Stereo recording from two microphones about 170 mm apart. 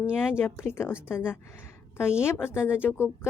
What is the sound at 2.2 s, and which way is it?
Speech, 15° left (ahead or behind).